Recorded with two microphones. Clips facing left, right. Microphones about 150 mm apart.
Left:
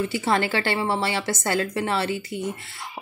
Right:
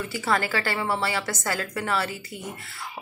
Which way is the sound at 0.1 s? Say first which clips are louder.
Left 3 dB; 25° left (ahead or behind).